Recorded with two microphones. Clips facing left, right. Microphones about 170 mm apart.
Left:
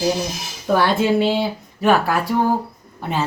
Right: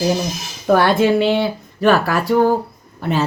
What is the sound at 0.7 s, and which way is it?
Speech, 60° right (ahead or behind).